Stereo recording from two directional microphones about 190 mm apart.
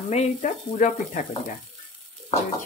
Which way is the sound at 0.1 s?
40° left (ahead or behind).